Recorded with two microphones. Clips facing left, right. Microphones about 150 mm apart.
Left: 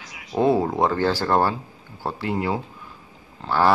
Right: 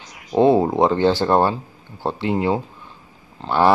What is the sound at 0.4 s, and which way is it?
Speech, 25° right (ahead or behind).